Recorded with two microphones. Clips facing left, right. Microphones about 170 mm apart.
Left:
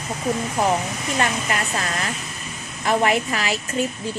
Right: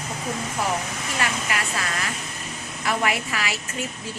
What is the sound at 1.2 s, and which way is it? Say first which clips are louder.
A woman's voice: left 4 dB; 35° left (ahead or behind).